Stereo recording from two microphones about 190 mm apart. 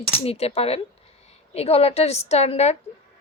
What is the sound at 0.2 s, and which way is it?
A woman's voice, 30° left (ahead or behind).